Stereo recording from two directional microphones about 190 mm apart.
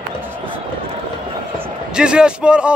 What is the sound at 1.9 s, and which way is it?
Speech, 5° right (ahead or behind).